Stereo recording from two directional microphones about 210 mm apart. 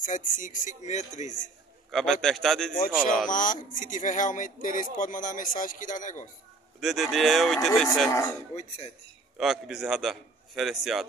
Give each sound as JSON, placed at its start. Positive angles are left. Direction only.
{"t": 0.0, "sound": "speech", "side_deg": 40}
{"t": 1.9, "sound": "a man's voice", "side_deg": 0}
{"t": 3.3, "sound": "speech", "side_deg": 40}
{"t": 6.8, "sound": "a man's voice", "side_deg": 0}
{"t": 8.5, "sound": "speech", "side_deg": 30}
{"t": 9.4, "sound": "a man's voice", "side_deg": 0}